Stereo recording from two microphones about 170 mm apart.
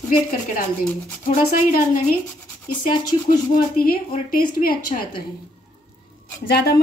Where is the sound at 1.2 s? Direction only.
50° left (ahead or behind).